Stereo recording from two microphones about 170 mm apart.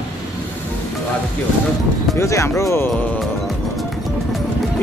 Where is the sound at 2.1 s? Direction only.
15° left (ahead or behind).